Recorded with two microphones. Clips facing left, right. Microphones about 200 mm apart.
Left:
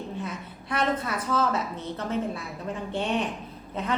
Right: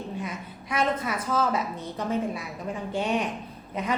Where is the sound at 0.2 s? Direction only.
10° right (ahead or behind).